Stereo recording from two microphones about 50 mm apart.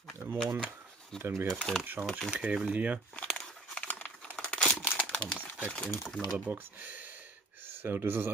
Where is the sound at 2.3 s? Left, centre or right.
Right.